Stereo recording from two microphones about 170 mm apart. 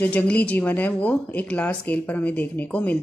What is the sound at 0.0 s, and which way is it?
Speech, 10° left (ahead or behind).